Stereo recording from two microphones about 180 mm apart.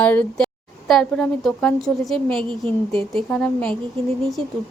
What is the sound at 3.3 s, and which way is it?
Speech, 5° left (ahead or behind).